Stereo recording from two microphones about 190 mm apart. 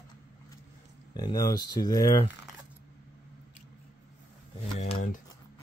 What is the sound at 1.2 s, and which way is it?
Speech, 20° left (ahead or behind).